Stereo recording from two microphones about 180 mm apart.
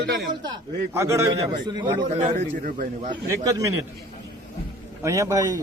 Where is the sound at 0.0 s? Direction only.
70° right (ahead or behind).